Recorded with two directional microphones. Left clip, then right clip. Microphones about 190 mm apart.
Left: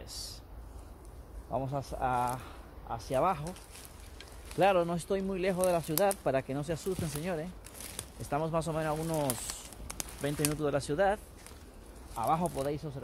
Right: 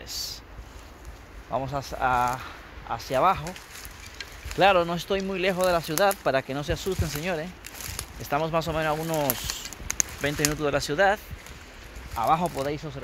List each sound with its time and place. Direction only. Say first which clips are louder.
0.1 s a sound: right 11 dB; 10° right (ahead or behind)
1.5 s speech: right 6 dB; 5° right (ahead or behind)
4.6 s speech: right 7 dB; 10° right (ahead or behind)
9.3 s a sound: right 8 dB; centre (ahead or behind)
10.6 s speech: right 6 dB; 5° right (ahead or behind)
12.2 s speech: right 7 dB; 15° right (ahead or behind)